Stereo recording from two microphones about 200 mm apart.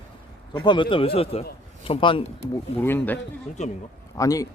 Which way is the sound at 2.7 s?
10° left (ahead or behind).